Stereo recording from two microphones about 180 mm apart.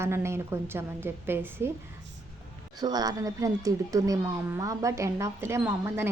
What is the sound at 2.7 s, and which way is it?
Speech, 20° right (ahead or behind).